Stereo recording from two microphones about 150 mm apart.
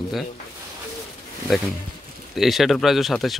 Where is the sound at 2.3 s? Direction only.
Centre (ahead or behind).